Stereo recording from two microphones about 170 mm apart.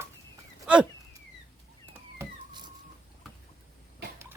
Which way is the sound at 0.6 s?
5° right (ahead or behind).